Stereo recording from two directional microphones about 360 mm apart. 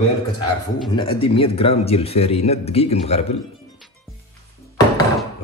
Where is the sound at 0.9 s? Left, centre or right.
Centre.